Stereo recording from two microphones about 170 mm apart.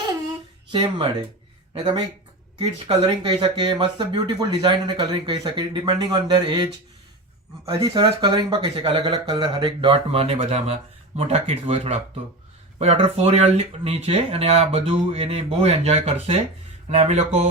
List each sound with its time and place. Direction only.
0.7 s speech: 30° right (ahead or behind)